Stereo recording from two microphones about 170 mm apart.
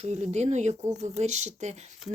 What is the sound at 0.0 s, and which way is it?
Speech, 40° right (ahead or behind).